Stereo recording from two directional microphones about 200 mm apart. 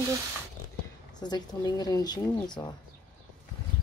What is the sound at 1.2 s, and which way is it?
Speech, 20° left (ahead or behind).